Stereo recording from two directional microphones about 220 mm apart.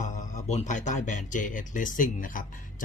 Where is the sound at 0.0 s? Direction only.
30° left (ahead or behind).